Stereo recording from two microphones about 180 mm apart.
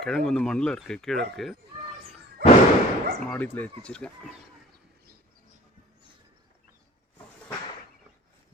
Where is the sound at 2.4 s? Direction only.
65° right (ahead or behind).